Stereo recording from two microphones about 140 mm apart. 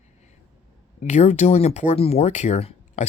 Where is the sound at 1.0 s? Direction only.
55° left (ahead or behind).